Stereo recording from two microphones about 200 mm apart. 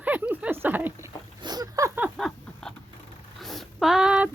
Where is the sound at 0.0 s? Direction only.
10° right (ahead or behind).